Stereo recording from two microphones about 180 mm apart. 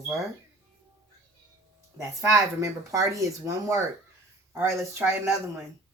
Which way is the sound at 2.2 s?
15° right (ahead or behind).